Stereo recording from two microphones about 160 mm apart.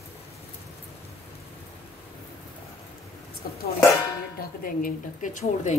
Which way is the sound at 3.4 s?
65° left (ahead or behind).